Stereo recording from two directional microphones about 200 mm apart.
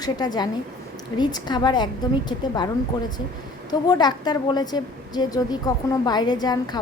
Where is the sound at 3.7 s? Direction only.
20° left (ahead or behind).